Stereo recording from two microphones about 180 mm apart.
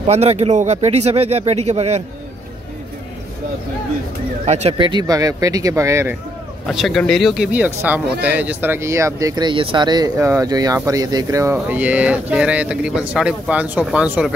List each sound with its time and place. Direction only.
0.0 s speech: 35° right (ahead or behind)
4.5 s speech: 35° right (ahead or behind); by 6.1 s 15° right (ahead or behind)
6.7 s speech: centre (ahead or behind); by 11.5 s 20° right (ahead or behind)
11.5 s speech: 5° right (ahead or behind)